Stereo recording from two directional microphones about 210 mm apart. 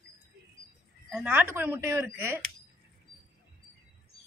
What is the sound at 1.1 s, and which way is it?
Speech, 5° right (ahead or behind).